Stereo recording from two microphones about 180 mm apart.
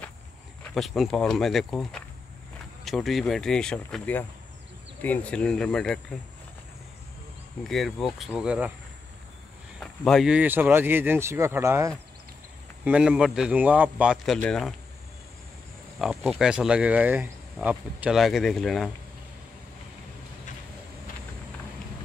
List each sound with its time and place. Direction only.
0.7 s speech: centre (ahead or behind)
7.6 s speech: centre (ahead or behind)
9.8 s speech: centre (ahead or behind)
16.0 s speech: 5° right (ahead or behind)